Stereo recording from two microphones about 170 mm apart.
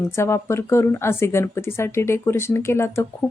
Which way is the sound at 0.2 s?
15° left (ahead or behind).